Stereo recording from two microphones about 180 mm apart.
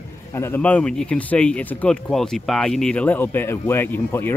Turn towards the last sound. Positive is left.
turn(degrees=10)  # may be behind; listen again after turning